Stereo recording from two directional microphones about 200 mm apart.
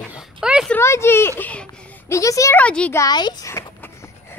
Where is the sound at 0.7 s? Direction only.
15° left (ahead or behind).